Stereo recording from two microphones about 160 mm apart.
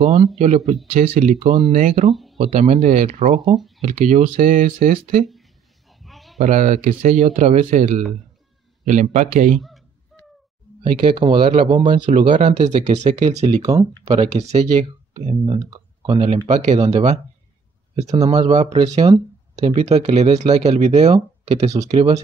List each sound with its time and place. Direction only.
0.0 s speech: 40° right (ahead or behind)
5.9 s a sound: centre (ahead or behind)
6.3 s speech: 50° right (ahead or behind)
10.8 s speech: 35° right (ahead or behind)
12.4 s speech: 45° right (ahead or behind)
13.6 s speech: 20° right (ahead or behind)
14.0 s speech: 40° right (ahead or behind)
18.2 s speech: 30° right (ahead or behind)
19.7 s speech: 45° right (ahead or behind)